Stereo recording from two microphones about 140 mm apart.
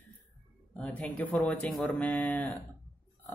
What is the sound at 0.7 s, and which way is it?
Speech, 10° left (ahead or behind).